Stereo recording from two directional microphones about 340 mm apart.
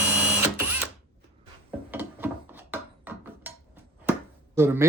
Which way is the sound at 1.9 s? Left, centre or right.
Centre.